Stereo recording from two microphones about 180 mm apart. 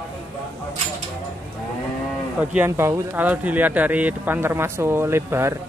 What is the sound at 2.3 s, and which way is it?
Speech, 10° right (ahead or behind).